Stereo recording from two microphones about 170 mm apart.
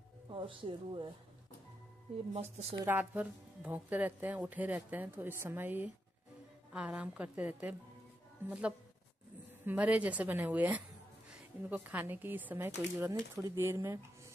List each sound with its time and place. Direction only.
0.3 s speech: 30° right (ahead or behind)
2.3 s a woman's voice: 40° right (ahead or behind)
2.8 s speech: 10° right (ahead or behind)